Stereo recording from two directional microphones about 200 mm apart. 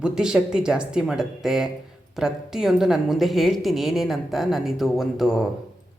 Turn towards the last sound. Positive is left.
turn(degrees=0)  # may be behind; listen again after turning